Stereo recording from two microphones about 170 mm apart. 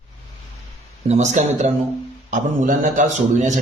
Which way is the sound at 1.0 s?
40° right (ahead or behind).